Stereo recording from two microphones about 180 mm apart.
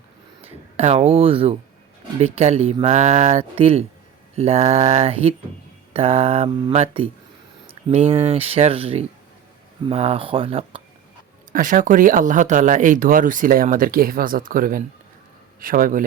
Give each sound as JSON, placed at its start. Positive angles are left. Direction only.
{"t": 0.4, "sound": "speech", "side_deg": -35}
{"t": 11.5, "sound": "speech", "side_deg": -50}